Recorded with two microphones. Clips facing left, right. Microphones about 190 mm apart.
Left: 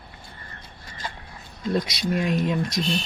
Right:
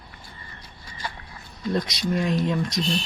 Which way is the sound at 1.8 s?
5° left (ahead or behind).